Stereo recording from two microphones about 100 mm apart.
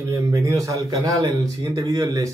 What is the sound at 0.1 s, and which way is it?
Speech, 30° right (ahead or behind).